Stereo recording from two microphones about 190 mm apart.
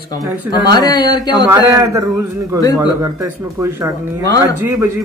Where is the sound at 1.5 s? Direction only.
15° right (ahead or behind).